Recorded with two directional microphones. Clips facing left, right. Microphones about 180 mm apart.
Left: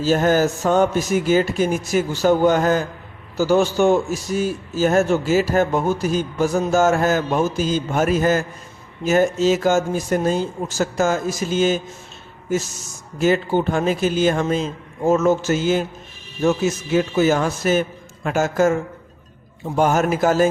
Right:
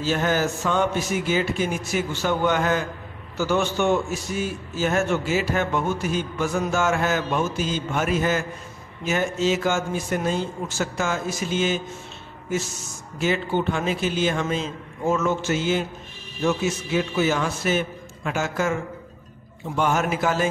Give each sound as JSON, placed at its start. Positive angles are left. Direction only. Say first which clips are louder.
{"t": 0.0, "sound": "a man's voice", "louder": "left 6 dB", "side_deg": 40}
{"t": 13.2, "sound": "a man's voice", "louder": "left 5 dB", "side_deg": 40}